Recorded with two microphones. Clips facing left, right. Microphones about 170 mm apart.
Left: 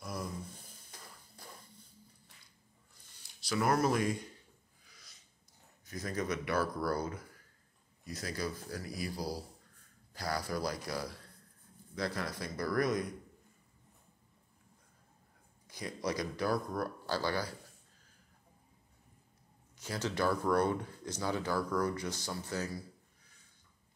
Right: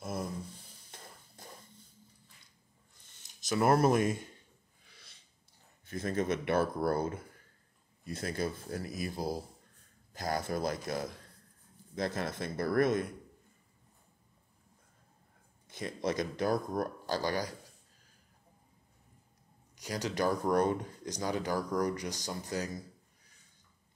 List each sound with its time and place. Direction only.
0.0 s a sound: 25° right (ahead or behind)
3.1 s speech: 20° right (ahead or behind)
4.8 s a sound: 30° right (ahead or behind)
5.9 s speech: 25° right (ahead or behind)
16.0 s speech: 25° right (ahead or behind)
19.8 s speech: 15° right (ahead or behind)